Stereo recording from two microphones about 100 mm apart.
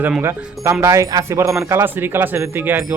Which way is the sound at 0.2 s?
25° right (ahead or behind).